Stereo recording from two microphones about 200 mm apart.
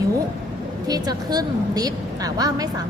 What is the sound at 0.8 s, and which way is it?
A woman's voice, 20° right (ahead or behind).